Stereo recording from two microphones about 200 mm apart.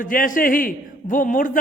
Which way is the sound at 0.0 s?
45° left (ahead or behind).